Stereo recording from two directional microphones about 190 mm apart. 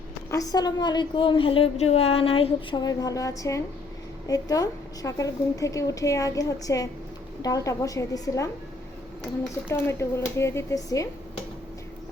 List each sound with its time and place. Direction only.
0.3 s a woman's voice: 20° left (ahead or behind)
9.6 s a woman's voice: 10° left (ahead or behind)